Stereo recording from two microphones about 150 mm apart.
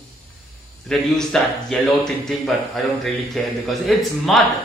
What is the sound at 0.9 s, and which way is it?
Speech, 5° left (ahead or behind).